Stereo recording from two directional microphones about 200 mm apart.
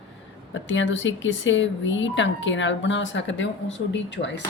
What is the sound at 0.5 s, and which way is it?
A woman's voice, 70° left (ahead or behind).